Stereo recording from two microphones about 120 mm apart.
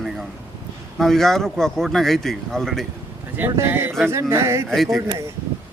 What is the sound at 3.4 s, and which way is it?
Speech, 20° right (ahead or behind).